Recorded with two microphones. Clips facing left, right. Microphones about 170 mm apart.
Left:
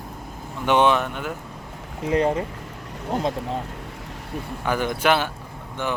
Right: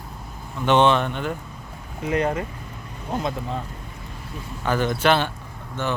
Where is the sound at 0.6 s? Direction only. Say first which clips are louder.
Right 1 dB; 10° left (ahead or behind).